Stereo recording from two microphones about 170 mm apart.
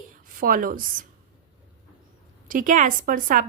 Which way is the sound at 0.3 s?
55° right (ahead or behind).